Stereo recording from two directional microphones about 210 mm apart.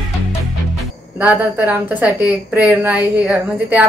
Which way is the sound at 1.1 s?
10° right (ahead or behind).